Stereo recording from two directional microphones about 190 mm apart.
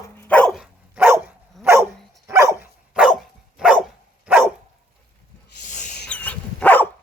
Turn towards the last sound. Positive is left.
turn(degrees=10)  # may be behind; listen again after turning